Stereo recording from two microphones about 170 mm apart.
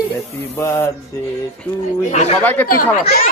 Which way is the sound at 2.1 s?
40° left (ahead or behind).